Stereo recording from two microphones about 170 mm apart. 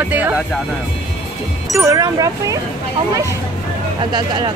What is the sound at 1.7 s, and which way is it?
Speech, 20° right (ahead or behind).